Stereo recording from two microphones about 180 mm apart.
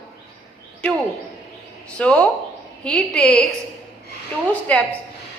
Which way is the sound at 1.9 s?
5° left (ahead or behind).